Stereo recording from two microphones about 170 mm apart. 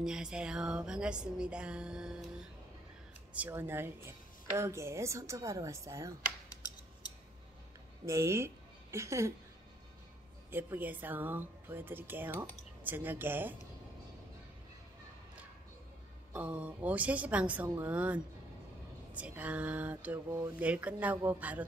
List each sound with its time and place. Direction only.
0.0 s music: 5° right (ahead or behind)
3.3 s speech: 10° right (ahead or behind)
8.0 s speech: 15° right (ahead or behind)
10.5 s speech: 10° right (ahead or behind)
16.3 s speech: 5° right (ahead or behind)